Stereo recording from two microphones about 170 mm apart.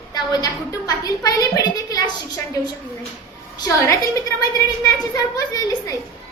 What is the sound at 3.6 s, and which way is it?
Speech, 20° left (ahead or behind).